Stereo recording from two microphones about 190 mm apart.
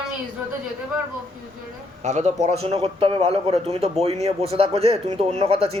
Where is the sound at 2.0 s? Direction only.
35° right (ahead or behind).